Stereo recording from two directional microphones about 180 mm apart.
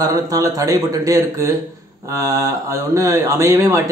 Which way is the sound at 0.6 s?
20° right (ahead or behind).